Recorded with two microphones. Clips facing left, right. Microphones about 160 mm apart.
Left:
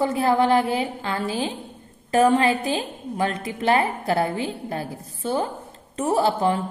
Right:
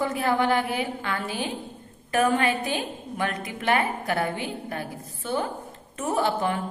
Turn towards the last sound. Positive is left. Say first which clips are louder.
# left 4 dB
turn(degrees=30)  # may be behind; listen again after turning